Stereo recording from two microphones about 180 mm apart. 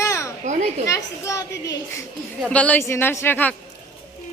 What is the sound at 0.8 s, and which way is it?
Speech, 15° left (ahead or behind).